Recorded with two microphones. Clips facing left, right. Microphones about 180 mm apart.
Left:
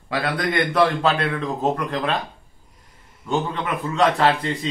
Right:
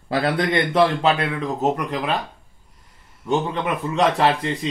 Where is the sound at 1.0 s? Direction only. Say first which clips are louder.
Right 1 dB; 15° right (ahead or behind).